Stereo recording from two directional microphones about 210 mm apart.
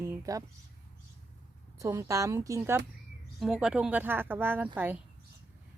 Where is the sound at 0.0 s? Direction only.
15° right (ahead or behind).